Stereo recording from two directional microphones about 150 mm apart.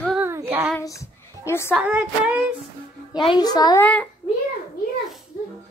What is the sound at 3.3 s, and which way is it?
Speech, 25° left (ahead or behind).